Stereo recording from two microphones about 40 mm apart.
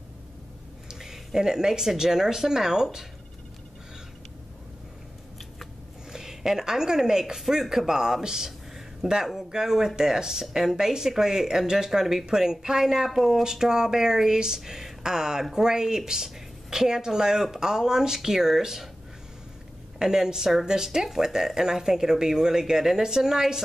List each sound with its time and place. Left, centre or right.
0.8 s speech: centre
6.1 s speech: centre
20.0 s speech: centre